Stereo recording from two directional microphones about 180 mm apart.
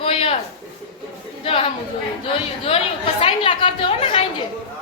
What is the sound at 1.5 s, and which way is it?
A woman's voice, 35° left (ahead or behind).